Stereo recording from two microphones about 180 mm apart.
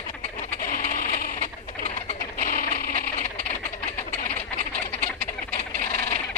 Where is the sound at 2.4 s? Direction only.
55° left (ahead or behind).